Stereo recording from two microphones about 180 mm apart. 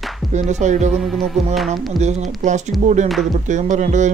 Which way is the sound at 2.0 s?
40° right (ahead or behind).